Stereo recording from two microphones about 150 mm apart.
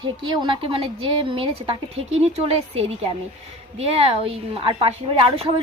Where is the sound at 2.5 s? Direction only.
40° right (ahead or behind).